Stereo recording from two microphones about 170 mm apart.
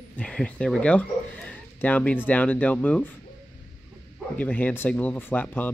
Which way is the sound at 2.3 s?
10° left (ahead or behind).